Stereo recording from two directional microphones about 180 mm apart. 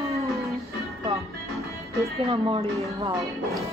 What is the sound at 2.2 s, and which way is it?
Speech, 30° right (ahead or behind).